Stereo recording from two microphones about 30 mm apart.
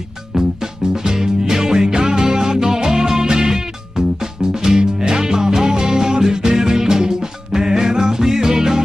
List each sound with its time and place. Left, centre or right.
0.4 s music: right